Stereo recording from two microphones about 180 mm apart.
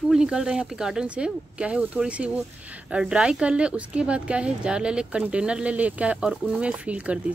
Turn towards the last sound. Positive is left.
turn(degrees=-5)  # may be behind; listen again after turning